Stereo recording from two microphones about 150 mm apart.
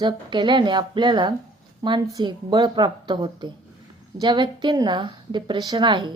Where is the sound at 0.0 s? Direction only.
30° right (ahead or behind).